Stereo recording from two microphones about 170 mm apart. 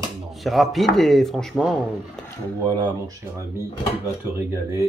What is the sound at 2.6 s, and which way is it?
Speech, 25° right (ahead or behind).